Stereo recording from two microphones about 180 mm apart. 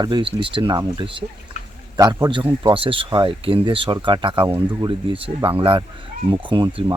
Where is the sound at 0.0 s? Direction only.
25° right (ahead or behind).